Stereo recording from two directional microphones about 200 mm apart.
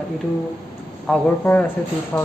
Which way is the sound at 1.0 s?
5° left (ahead or behind).